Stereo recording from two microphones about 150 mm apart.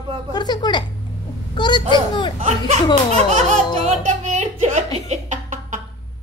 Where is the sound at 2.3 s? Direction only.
45° right (ahead or behind).